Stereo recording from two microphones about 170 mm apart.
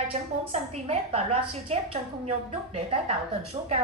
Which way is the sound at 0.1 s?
40° right (ahead or behind).